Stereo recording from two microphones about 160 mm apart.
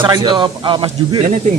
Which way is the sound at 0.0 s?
30° right (ahead or behind).